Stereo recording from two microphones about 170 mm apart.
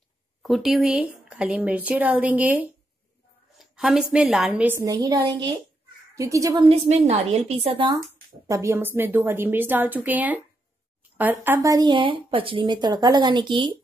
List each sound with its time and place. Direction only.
0.4 s a woman's voice: centre (ahead or behind); by 6.6 s 20° right (ahead or behind)
6.6 s a woman's voice: 35° right (ahead or behind)
8.5 s speech: 15° right (ahead or behind)
11.4 s a woman's voice: 15° right (ahead or behind)